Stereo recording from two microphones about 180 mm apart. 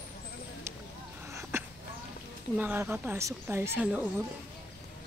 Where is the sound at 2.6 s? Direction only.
10° right (ahead or behind).